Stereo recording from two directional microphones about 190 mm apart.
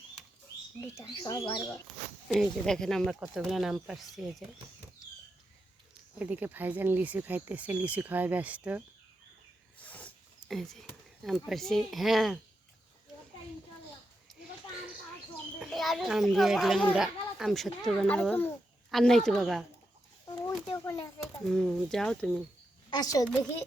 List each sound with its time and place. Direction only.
0.9 s speech: 15° left (ahead or behind)
2.3 s speech: centre (ahead or behind)
6.1 s speech: 10° right (ahead or behind)
9.7 s a sound: 10° left (ahead or behind)
10.5 s speech: centre (ahead or behind)
15.6 s a child's voice: centre (ahead or behind)
20.7 s speech: 15° left (ahead or behind)
21.5 s speech: centre (ahead or behind)
22.9 s a woman's voice: 20° left (ahead or behind)